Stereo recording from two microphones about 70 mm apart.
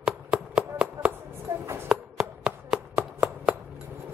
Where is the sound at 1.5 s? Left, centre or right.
Right.